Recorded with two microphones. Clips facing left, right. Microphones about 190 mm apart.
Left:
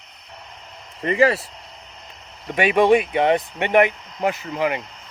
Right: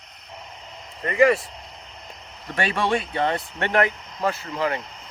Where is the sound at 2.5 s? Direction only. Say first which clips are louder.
Left 8 dB; 15° left (ahead or behind).